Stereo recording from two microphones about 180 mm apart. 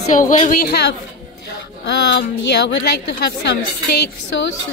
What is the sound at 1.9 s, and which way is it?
Child singing, 75° left (ahead or behind).